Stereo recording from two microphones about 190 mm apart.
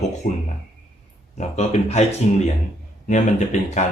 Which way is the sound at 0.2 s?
45° left (ahead or behind).